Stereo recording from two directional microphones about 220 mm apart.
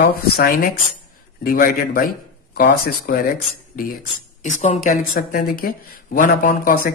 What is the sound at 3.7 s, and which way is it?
Speech, 40° left (ahead or behind).